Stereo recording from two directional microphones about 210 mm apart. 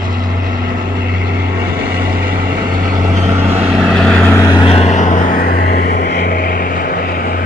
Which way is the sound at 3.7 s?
Centre (ahead or behind).